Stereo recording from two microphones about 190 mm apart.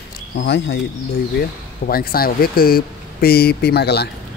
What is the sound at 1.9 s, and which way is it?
Speech, 50° left (ahead or behind).